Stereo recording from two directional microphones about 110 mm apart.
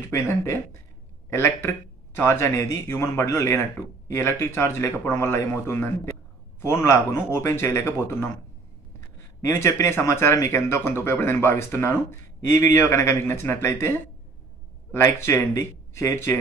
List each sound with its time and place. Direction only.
0.1 s speech: 25° left (ahead or behind)
9.5 s speech: 25° left (ahead or behind)